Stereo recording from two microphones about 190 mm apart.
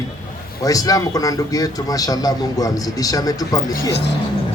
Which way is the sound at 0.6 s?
20° left (ahead or behind).